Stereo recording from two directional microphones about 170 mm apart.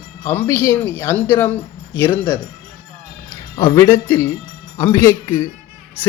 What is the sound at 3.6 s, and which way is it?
Speech, 15° left (ahead or behind).